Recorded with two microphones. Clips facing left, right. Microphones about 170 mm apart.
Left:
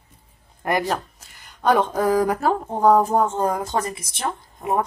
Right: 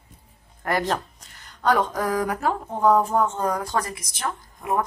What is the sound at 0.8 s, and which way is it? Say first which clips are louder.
Speech: left 1 dB; 5° left (ahead or behind).